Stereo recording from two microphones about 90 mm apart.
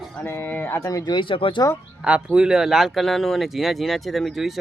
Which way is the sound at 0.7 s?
35° left (ahead or behind).